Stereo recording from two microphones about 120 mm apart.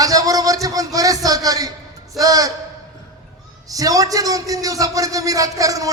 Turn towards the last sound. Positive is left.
turn(degrees=-30)  # may be behind; listen again after turning